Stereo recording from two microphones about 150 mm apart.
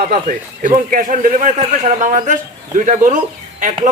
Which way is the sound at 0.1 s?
60° right (ahead or behind).